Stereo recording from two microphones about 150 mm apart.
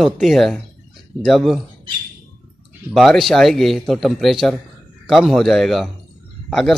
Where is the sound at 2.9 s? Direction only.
Centre (ahead or behind).